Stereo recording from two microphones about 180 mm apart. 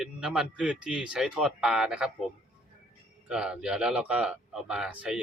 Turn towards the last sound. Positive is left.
turn(degrees=-5)  # may be behind; listen again after turning